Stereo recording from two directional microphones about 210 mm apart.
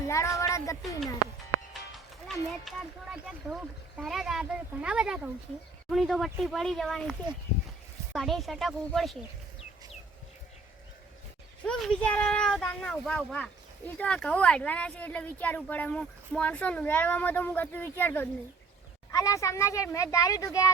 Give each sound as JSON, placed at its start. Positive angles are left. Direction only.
{"t": 0.1, "sound": "a sound", "side_deg": 15}
{"t": 2.2, "sound": "speech", "side_deg": 0}
{"t": 11.6, "sound": "speech", "side_deg": 5}